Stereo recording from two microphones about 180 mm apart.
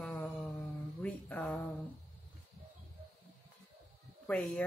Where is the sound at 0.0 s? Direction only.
5° left (ahead or behind).